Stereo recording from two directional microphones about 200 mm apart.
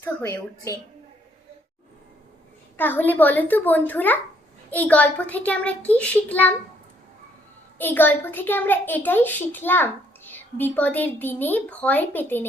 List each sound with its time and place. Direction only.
0.0 s a child's voice: 15° left (ahead or behind)
2.7 s a child's voice: 10° left (ahead or behind)
7.8 s a child's voice: 10° left (ahead or behind)